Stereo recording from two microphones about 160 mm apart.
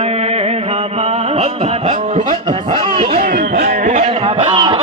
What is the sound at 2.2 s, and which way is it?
Mantra, 30° right (ahead or behind).